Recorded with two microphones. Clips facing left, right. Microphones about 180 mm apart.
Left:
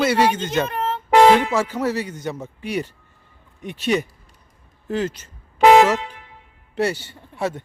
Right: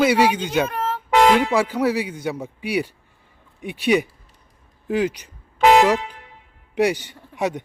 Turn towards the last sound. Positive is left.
turn(degrees=-15)  # may be behind; listen again after turning